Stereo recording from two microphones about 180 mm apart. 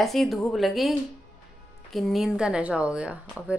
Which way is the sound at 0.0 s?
Centre (ahead or behind).